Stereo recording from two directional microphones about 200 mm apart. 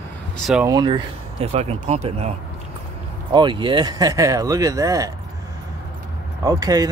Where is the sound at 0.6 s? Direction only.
20° right (ahead or behind).